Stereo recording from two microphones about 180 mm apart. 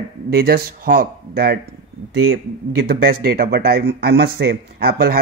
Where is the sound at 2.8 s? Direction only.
55° right (ahead or behind).